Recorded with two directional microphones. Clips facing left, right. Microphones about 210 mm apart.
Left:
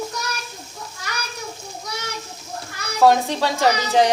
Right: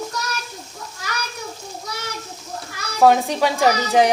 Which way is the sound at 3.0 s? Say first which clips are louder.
Right 1 dB; 15° right (ahead or behind).